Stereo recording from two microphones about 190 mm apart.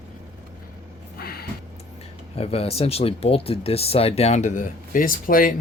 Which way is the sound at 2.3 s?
30° left (ahead or behind).